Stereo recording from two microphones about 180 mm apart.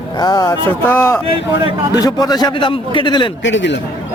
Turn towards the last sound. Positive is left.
turn(degrees=90)